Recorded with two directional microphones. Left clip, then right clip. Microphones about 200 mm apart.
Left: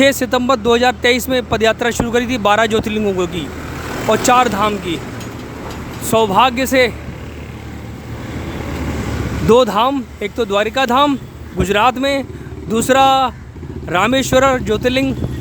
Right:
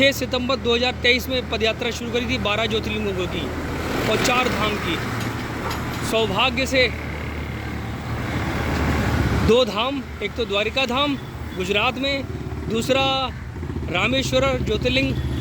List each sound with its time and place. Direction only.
0.0 s speech: 35° left (ahead or behind)
6.1 s speech: 35° left (ahead or behind)
9.5 s speech: 35° left (ahead or behind)